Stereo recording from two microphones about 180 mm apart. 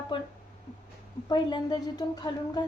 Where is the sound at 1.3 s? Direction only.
25° left (ahead or behind).